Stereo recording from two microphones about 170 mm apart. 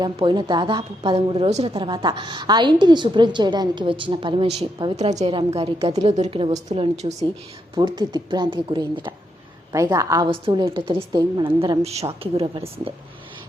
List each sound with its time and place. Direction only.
0.0 s a woman's voice: 25° right (ahead or behind)
7.8 s a woman's voice: 25° right (ahead or behind)
9.7 s a woman's voice: 20° right (ahead or behind); by 12.9 s 35° right (ahead or behind)